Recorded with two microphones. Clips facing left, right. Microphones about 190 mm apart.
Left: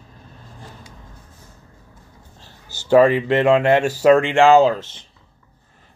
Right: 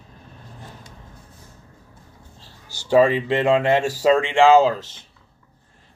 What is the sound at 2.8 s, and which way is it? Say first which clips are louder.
Speech: left 3 dB; 70° left (ahead or behind).